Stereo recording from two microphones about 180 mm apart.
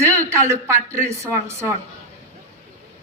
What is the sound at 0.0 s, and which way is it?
Speech, 15° right (ahead or behind).